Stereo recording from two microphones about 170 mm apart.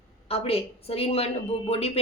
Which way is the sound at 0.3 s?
35° left (ahead or behind).